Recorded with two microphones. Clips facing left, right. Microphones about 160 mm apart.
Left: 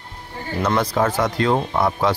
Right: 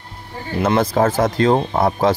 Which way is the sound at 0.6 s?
30° right (ahead or behind).